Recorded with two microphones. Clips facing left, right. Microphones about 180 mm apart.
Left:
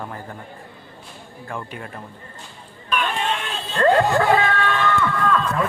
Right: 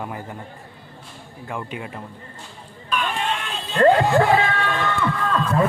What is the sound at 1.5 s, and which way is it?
Speech, 15° right (ahead or behind).